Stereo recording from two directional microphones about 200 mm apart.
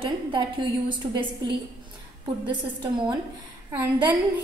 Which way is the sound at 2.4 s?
25° right (ahead or behind).